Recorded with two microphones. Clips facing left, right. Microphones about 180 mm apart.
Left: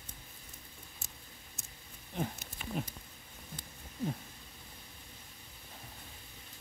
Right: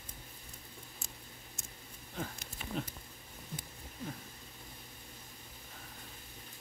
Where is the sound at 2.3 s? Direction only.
10° left (ahead or behind).